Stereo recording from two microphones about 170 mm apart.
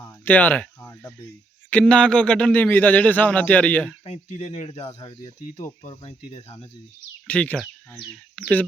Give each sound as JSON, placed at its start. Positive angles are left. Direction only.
{"t": 0.0, "sound": "a sound", "side_deg": 15}
{"t": 1.7, "sound": "a man's voice", "side_deg": 5}
{"t": 4.0, "sound": "speech", "side_deg": 40}
{"t": 7.3, "sound": "a man's voice", "side_deg": 10}